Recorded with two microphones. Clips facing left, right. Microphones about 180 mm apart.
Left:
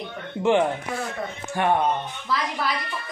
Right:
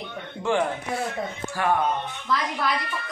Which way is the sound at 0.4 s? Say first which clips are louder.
Left 4 dB; 20° left (ahead or behind).